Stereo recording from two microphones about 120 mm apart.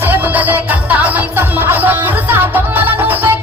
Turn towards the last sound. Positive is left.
turn(degrees=-15)  # may be behind; listen again after turning